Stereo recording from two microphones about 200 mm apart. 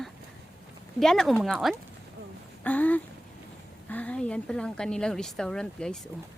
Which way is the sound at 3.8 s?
5° left (ahead or behind).